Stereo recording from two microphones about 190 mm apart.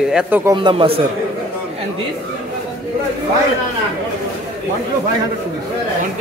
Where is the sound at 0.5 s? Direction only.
25° right (ahead or behind).